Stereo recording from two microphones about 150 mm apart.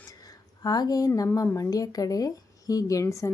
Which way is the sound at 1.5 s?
25° left (ahead or behind).